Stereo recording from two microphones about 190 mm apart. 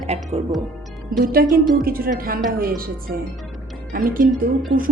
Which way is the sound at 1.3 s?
50° right (ahead or behind).